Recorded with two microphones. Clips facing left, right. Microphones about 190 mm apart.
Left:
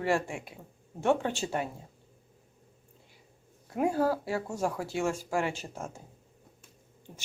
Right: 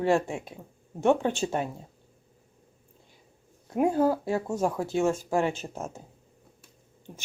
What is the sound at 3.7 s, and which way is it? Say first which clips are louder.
Speech: right 4 dB; 20° right (ahead or behind).